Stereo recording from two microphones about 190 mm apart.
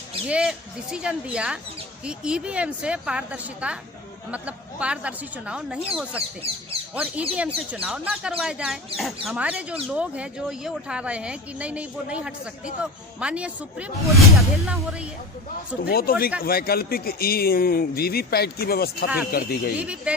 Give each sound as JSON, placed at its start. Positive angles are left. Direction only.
{"t": 0.3, "sound": "speech", "side_deg": -5}
{"t": 6.9, "sound": "speech", "side_deg": -5}
{"t": 15.8, "sound": "a man's voice", "side_deg": 50}
{"t": 19.8, "sound": "speech", "side_deg": -5}